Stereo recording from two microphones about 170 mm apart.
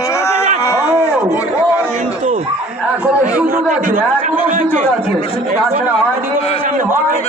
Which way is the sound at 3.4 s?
55° right (ahead or behind).